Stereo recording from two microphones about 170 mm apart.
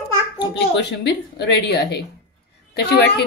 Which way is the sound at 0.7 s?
80° left.